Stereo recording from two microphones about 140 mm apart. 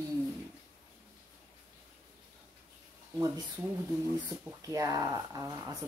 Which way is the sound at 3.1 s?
20° right (ahead or behind).